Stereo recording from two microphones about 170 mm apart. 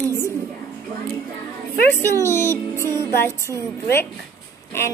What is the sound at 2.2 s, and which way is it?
A woman's voice, 15° left (ahead or behind).